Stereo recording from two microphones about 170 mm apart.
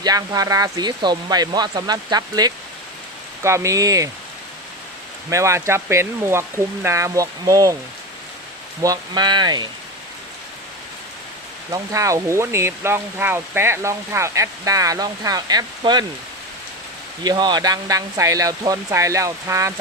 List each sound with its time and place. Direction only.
0.0 s speech: 20° right (ahead or behind)
5.3 s speech: 15° right (ahead or behind)
8.8 s speech: 20° right (ahead or behind)
11.7 s speech: 20° right (ahead or behind)
17.2 s speech: 25° right (ahead or behind)